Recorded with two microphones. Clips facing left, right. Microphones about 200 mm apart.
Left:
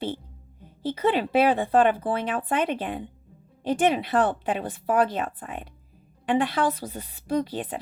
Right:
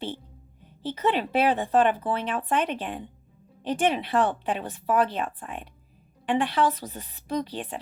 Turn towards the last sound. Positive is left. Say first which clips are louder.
# left 3 dB
turn(degrees=45)  # may be behind; listen again after turning